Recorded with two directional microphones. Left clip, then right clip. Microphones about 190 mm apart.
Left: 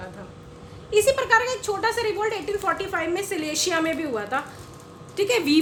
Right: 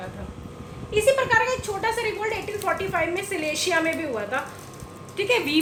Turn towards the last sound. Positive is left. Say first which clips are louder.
# left 1 dB
turn(degrees=50)  # may be behind; listen again after turning